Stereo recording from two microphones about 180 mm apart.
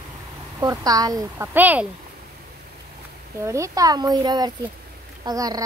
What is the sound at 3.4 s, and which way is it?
Speech, 15° right (ahead or behind).